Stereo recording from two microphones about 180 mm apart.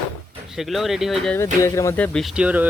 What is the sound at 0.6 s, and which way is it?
Speech, centre (ahead or behind).